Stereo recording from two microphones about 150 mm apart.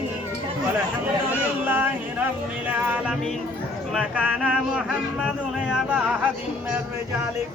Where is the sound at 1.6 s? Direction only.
15° right (ahead or behind).